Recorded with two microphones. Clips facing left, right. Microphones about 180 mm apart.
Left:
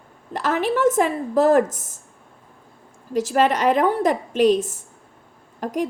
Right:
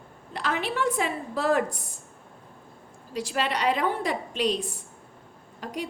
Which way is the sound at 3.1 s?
45° left (ahead or behind).